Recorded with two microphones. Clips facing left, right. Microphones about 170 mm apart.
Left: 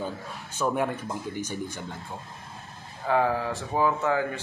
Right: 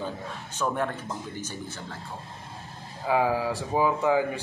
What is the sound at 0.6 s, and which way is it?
Speech, 10° left (ahead or behind).